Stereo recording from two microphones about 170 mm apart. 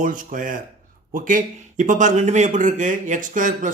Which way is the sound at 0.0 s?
50° right (ahead or behind).